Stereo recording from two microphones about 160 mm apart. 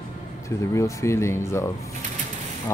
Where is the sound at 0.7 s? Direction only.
20° left (ahead or behind).